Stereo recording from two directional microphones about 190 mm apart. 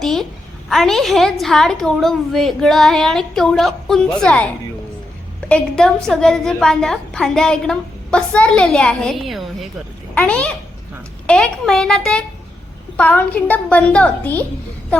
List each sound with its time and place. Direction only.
0.0 s a sound: centre (ahead or behind)
0.7 s a woman's voice: centre (ahead or behind)
5.5 s a woman's voice: 5° left (ahead or behind)